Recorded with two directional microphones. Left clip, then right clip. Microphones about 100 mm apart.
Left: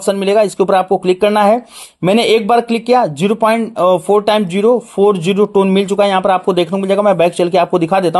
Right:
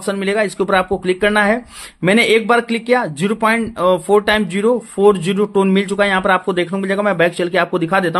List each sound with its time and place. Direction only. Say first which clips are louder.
0.0 s speech: left 6 dB; 35° left (ahead or behind)